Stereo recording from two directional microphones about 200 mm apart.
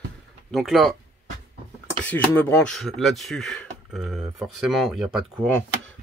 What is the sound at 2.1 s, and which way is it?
Speech, 10° left (ahead or behind).